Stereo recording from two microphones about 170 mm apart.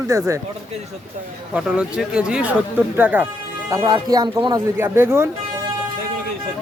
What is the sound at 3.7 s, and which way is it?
Speech, 25° right (ahead or behind).